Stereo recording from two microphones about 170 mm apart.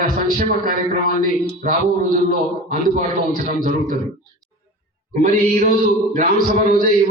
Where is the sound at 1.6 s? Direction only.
50° right (ahead or behind).